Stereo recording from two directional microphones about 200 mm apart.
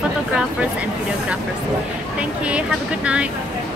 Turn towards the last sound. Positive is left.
turn(degrees=-5)  # may be behind; listen again after turning